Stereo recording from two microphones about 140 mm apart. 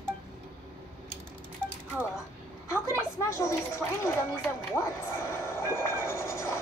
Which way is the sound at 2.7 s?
20° left (ahead or behind).